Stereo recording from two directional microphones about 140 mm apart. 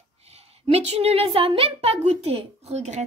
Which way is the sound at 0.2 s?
45° right (ahead or behind).